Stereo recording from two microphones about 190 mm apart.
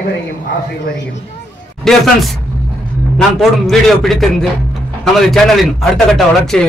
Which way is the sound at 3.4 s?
Centre (ahead or behind).